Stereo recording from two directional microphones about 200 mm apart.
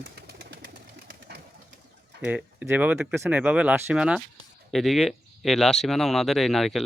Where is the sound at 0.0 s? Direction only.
55° right (ahead or behind).